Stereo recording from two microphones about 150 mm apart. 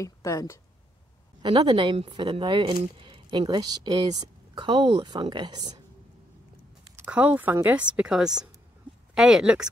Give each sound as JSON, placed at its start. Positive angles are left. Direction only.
{"t": 0.0, "sound": "speech", "side_deg": 20}
{"t": 1.4, "sound": "speech", "side_deg": -30}
{"t": 7.0, "sound": "speech", "side_deg": -10}